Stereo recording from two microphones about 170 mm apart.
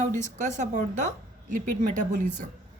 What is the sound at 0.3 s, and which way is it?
Speech, 45° right (ahead or behind).